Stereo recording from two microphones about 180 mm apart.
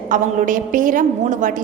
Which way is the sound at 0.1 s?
45° right (ahead or behind).